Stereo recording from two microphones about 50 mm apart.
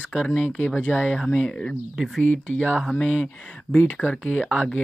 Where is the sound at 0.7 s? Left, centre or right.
Left.